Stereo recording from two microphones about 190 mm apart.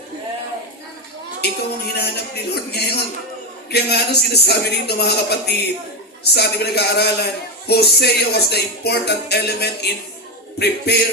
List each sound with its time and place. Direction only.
1.4 s music: 60° left (ahead or behind)